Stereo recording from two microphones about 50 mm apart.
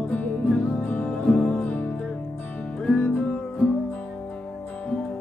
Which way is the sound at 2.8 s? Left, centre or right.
Left.